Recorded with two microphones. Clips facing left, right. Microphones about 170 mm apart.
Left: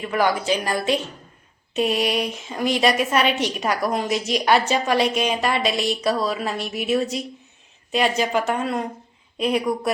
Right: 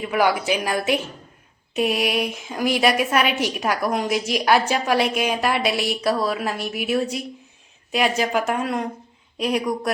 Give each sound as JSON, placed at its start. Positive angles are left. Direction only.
{"t": 0.0, "sound": "a woman's voice", "side_deg": -10}